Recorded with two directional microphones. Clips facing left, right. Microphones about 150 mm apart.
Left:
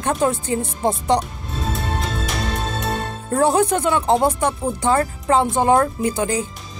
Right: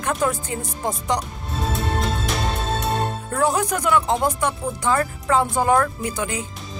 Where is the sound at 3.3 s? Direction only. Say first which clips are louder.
Left 5 dB; 30° left (ahead or behind).